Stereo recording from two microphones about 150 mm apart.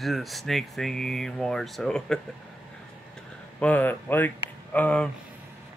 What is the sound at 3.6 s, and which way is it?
Speech, 10° left (ahead or behind).